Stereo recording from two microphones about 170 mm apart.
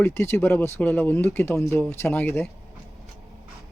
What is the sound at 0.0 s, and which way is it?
Speech, 15° left (ahead or behind).